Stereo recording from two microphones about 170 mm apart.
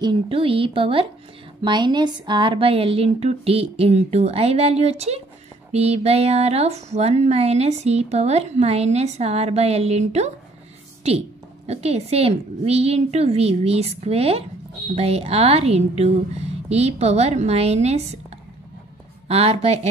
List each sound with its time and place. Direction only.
0.0 s speech: 30° right (ahead or behind)
19.2 s speech: 35° right (ahead or behind)